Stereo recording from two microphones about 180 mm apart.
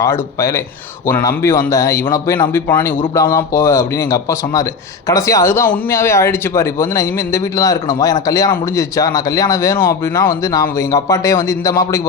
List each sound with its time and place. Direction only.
0.0 s a man's voice: 15° left (ahead or behind)